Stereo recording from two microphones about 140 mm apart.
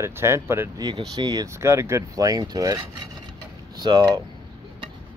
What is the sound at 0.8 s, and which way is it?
Speech, 30° right (ahead or behind).